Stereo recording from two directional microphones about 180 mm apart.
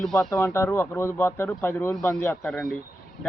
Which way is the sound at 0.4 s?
15° left (ahead or behind).